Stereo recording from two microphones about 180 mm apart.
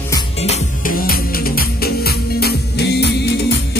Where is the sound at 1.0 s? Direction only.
55° left (ahead or behind).